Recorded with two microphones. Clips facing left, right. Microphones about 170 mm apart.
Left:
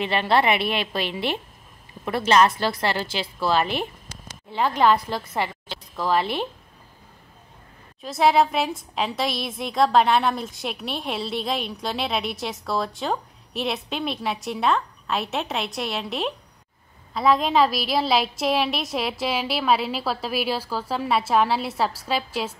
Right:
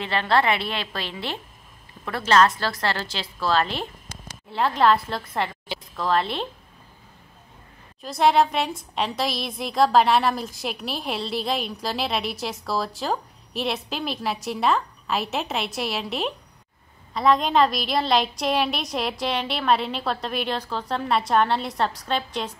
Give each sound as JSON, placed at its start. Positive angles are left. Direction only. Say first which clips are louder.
{"t": 0.0, "sound": "a woman's voice", "louder": "left 1 dB", "side_deg": 15}
{"t": 4.5, "sound": "a woman's voice", "louder": "even", "side_deg": -5}
{"t": 8.0, "sound": "a woman's voice", "louder": "even", "side_deg": 0}